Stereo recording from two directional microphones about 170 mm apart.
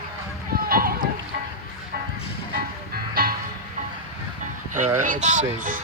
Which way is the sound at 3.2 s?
60° right (ahead or behind).